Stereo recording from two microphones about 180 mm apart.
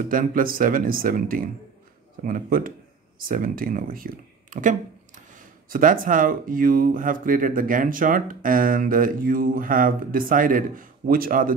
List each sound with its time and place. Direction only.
0.0 s speech: 50° right (ahead or behind)